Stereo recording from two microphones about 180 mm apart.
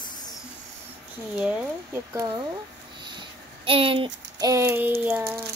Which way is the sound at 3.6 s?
30° right (ahead or behind).